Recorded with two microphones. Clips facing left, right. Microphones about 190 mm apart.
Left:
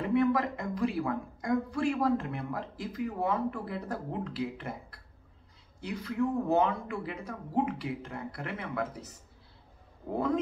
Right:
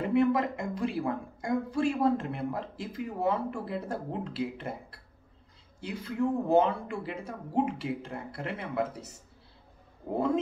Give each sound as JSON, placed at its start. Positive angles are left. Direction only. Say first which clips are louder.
{"t": 0.1, "sound": "a woman's voice", "louder": "right 1 dB", "side_deg": -25}